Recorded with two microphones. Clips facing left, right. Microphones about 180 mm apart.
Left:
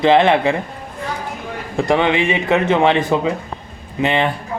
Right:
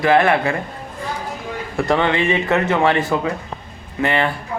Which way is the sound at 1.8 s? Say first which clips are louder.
Left 2 dB; 15° left (ahead or behind).